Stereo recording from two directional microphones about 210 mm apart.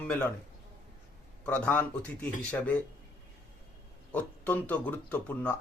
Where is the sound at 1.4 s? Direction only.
5° left (ahead or behind).